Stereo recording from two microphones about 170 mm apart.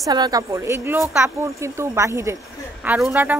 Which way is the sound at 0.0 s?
25° right (ahead or behind).